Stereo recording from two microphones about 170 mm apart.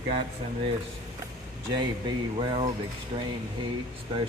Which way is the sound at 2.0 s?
30° right (ahead or behind).